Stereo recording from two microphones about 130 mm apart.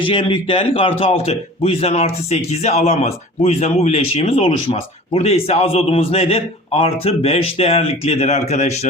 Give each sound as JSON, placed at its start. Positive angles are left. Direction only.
{"t": 0.0, "sound": "speech", "side_deg": 40}